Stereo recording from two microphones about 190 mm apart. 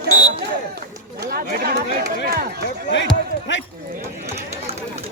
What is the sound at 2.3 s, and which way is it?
Speech, 55° right (ahead or behind).